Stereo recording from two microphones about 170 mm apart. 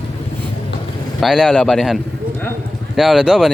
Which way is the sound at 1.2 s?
Centre (ahead or behind).